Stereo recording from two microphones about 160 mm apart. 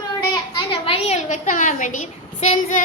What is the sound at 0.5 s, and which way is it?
A woman's voice, 35° left (ahead or behind).